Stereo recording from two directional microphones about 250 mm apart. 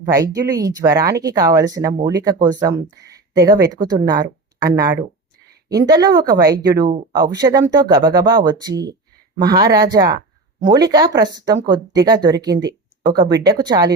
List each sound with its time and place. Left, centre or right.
0.0 s speech: centre